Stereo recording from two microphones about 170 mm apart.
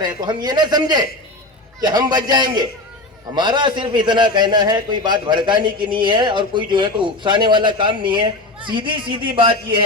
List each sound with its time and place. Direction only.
0.0 s a man's voice: 25° right (ahead or behind)